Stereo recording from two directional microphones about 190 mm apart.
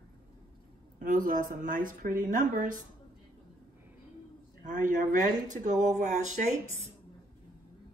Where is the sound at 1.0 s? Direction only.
45° right (ahead or behind).